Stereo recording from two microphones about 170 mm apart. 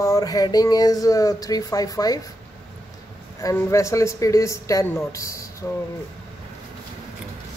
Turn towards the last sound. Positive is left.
turn(degrees=15)  # may be behind; listen again after turning